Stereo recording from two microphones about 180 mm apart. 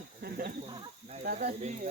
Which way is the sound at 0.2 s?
60° right (ahead or behind).